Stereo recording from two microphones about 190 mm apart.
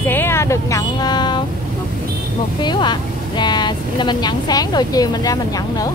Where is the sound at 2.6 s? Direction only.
25° left (ahead or behind).